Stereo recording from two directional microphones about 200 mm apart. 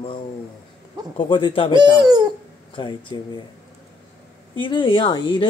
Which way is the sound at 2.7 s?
25° left (ahead or behind).